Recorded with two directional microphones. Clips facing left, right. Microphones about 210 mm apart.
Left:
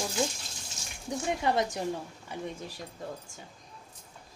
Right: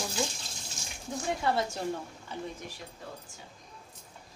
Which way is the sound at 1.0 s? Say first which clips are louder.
Left 1 dB; 20° left (ahead or behind).